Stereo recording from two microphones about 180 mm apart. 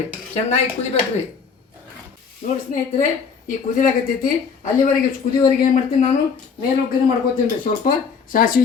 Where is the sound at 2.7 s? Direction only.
50° left (ahead or behind).